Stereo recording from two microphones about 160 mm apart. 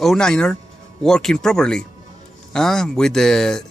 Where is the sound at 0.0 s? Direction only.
5° left (ahead or behind).